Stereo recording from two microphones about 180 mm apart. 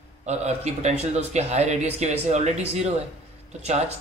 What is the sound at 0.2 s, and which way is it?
A man's voice, 40° right (ahead or behind).